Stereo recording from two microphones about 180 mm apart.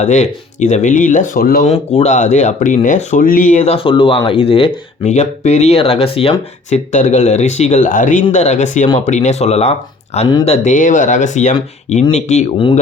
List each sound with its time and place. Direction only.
0.0 s speech: 40° left (ahead or behind)
1.6 s speech: 35° left (ahead or behind)
3.8 s speech: 30° left (ahead or behind)